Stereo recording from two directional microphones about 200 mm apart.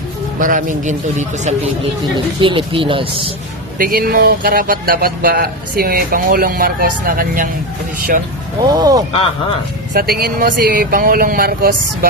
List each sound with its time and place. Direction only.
0.3 s a man's voice: 40° right (ahead or behind)
2.1 s a woman's voice: 25° right (ahead or behind)
3.8 s speech: 45° right (ahead or behind)
8.7 s a woman's voice: 20° right (ahead or behind)
9.9 s speech: 50° right (ahead or behind)